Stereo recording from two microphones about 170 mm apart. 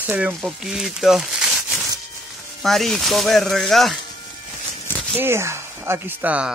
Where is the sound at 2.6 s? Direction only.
Centre (ahead or behind).